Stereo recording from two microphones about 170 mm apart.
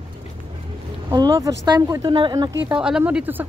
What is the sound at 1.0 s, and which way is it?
Speech, 25° right (ahead or behind).